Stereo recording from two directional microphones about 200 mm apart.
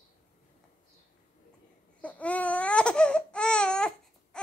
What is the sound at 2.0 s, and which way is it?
Baby cry, 5° left (ahead or behind).